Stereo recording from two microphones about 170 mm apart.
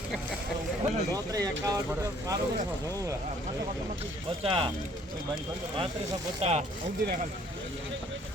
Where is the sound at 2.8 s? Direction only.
20° right (ahead or behind).